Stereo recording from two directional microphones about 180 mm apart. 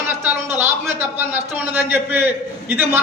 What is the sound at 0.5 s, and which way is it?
A man's voice, 10° right (ahead or behind).